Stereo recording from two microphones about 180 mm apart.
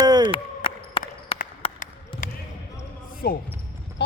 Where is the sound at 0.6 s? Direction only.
30° left (ahead or behind).